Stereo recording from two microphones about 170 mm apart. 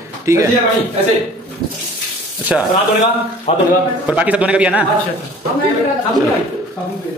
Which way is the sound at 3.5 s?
35° left (ahead or behind).